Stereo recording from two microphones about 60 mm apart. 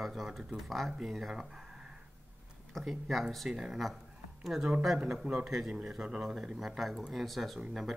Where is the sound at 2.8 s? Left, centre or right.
Centre.